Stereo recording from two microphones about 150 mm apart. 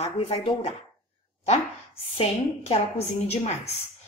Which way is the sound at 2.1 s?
40° left (ahead or behind).